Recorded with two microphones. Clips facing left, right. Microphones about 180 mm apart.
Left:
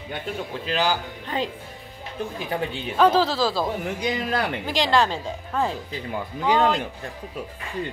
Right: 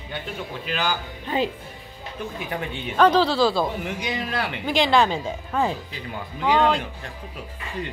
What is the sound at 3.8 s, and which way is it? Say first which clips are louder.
Speech: left 2 dB; 40° left (ahead or behind).